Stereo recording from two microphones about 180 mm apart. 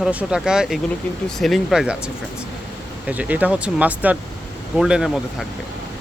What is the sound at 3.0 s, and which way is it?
Speech, 10° right (ahead or behind).